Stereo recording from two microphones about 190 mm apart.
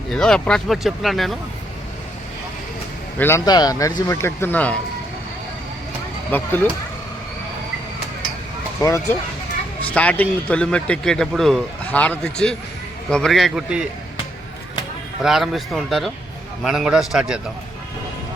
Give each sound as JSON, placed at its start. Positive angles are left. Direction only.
{"t": 0.1, "sound": "a man's voice", "side_deg": 5}
{"t": 3.2, "sound": "speech", "side_deg": 15}
{"t": 6.3, "sound": "speech", "side_deg": 10}
{"t": 8.8, "sound": "a man's voice", "side_deg": 15}
{"t": 15.2, "sound": "a man's voice", "side_deg": 0}